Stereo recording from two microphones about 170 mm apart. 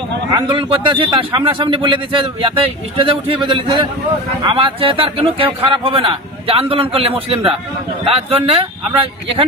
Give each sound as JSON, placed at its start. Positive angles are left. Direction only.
{"t": 0.3, "sound": "a man's voice", "side_deg": -30}